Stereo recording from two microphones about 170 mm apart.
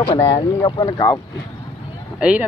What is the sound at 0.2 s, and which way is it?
Speech, 20° left (ahead or behind).